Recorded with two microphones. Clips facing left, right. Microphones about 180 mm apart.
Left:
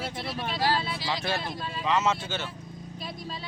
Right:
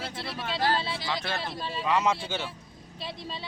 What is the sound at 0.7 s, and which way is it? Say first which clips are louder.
Speech: even; 25° right (ahead or behind).